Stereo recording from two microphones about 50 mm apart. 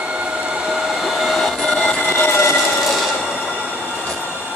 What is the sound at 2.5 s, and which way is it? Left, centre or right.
Train, centre.